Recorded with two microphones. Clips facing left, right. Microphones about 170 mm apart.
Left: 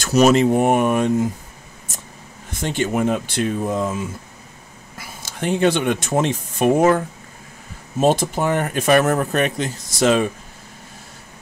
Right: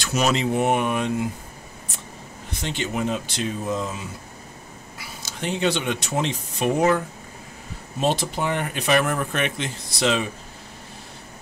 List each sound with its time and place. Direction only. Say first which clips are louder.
0.0 s speech: left 8 dB; 45° left (ahead or behind)
2.5 s speech: left 6 dB; 50° left (ahead or behind)
8.0 s speech: left 6 dB; 45° left (ahead or behind)